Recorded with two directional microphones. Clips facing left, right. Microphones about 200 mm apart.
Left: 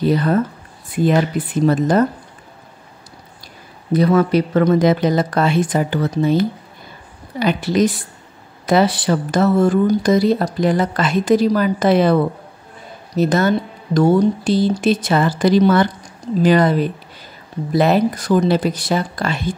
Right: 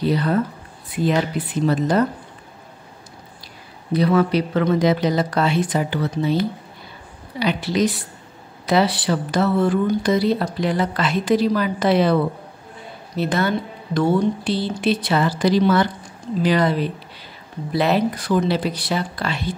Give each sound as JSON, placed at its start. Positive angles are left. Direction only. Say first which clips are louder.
{"t": 0.0, "sound": "speech", "louder": "left 3 dB", "side_deg": 50}
{"t": 3.9, "sound": "speech", "louder": "left 3 dB", "side_deg": 45}